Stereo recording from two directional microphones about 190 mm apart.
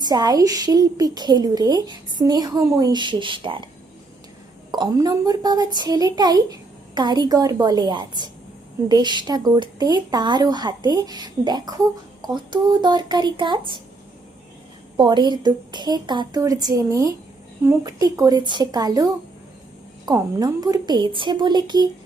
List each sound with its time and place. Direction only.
0.0 s a woman's voice: 20° right (ahead or behind)
4.7 s a woman's voice: 20° right (ahead or behind)
14.9 s a woman's voice: 25° right (ahead or behind)